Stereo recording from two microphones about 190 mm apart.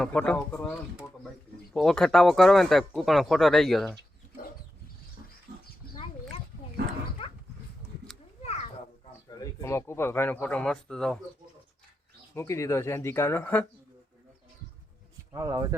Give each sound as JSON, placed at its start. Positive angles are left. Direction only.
{"t": 0.0, "sound": "speech", "side_deg": 5}
{"t": 7.2, "sound": "dog", "side_deg": 30}
{"t": 8.4, "sound": "children playing", "side_deg": 35}
{"t": 9.3, "sound": "speech", "side_deg": 20}
{"t": 12.3, "sound": "speech", "side_deg": 15}
{"t": 15.3, "sound": "speech", "side_deg": -15}